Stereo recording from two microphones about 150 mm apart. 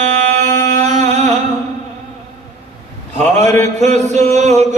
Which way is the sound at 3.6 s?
50° right (ahead or behind).